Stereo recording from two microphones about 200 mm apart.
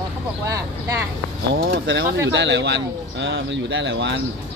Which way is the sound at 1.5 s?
55° right (ahead or behind).